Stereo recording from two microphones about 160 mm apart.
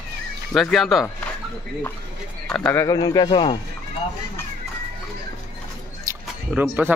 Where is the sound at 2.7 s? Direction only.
20° left (ahead or behind).